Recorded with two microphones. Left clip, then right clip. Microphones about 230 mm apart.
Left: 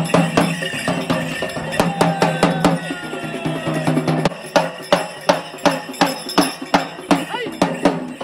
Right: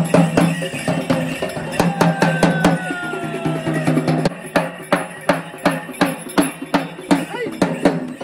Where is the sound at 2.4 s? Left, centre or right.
Left.